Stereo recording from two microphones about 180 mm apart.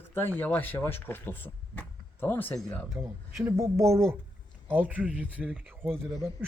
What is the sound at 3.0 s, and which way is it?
Speech, 15° right (ahead or behind).